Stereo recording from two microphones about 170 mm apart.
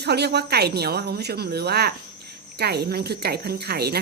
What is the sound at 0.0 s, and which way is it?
Speech, 70° right (ahead or behind).